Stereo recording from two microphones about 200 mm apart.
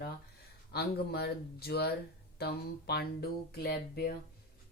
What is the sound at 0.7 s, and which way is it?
A woman's voice, 55° left (ahead or behind).